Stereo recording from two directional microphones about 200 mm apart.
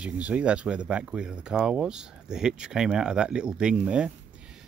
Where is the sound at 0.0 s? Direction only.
5° right (ahead or behind).